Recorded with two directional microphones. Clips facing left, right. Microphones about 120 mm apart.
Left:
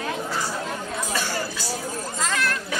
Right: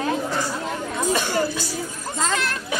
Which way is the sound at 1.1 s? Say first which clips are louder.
Right 7 dB; 20° right (ahead or behind).